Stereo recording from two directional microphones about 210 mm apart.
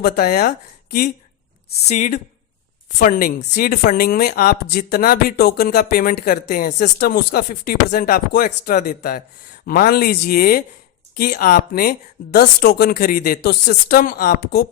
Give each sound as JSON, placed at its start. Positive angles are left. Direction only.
{"t": 0.0, "sound": "speech", "side_deg": 45}
{"t": 1.9, "sound": "a woman's voice", "side_deg": 35}